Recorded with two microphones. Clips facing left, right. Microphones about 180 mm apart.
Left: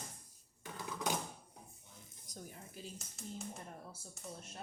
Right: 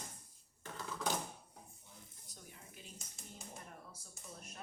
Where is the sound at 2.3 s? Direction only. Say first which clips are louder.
Left 8 dB; 40° left (ahead or behind).